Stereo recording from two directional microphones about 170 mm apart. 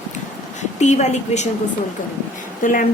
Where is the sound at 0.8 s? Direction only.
45° left (ahead or behind).